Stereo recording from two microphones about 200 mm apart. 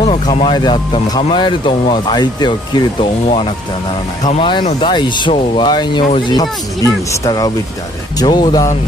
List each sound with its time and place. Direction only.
0.0 s speech: 30° left (ahead or behind)